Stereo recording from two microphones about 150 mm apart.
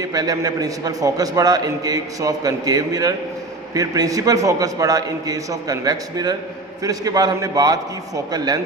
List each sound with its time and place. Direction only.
0.0 s a man's voice: 25° right (ahead or behind)